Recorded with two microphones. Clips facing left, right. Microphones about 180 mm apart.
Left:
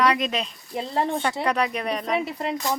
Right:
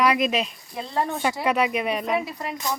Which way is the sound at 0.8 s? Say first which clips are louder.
Left 1 dB; 25° left (ahead or behind).